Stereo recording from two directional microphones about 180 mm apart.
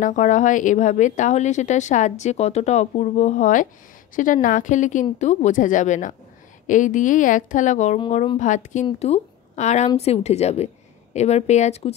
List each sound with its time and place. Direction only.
0.0 s a woman's voice: 45° left (ahead or behind)